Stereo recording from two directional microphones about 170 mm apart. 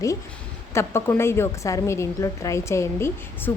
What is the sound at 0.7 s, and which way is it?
A woman's voice, 15° left (ahead or behind).